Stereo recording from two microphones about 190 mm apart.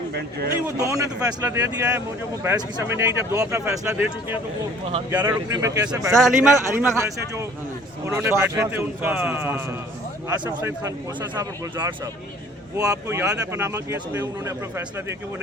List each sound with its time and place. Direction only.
0.1 s speech: 55° right (ahead or behind)
0.6 s speech: 15° right (ahead or behind)
6.1 s speech: centre (ahead or behind)
6.9 s speech: 15° right (ahead or behind)